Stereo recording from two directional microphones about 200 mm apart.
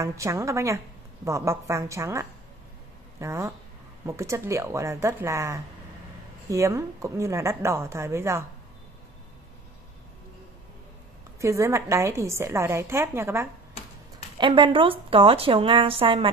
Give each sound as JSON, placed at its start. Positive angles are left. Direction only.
{"t": 0.0, "sound": "a woman's voice", "side_deg": -15}
{"t": 11.4, "sound": "a woman's voice", "side_deg": -15}
{"t": 14.4, "sound": "a woman's voice", "side_deg": -25}